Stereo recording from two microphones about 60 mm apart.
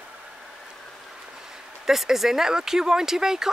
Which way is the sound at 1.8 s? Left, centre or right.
Centre.